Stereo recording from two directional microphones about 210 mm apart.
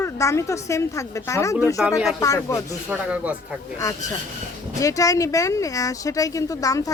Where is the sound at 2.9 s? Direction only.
5° right (ahead or behind).